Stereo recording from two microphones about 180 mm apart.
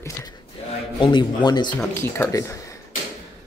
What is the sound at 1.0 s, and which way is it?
Speech, 25° left (ahead or behind).